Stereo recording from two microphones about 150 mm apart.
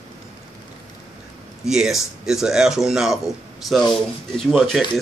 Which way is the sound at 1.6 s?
5° right (ahead or behind).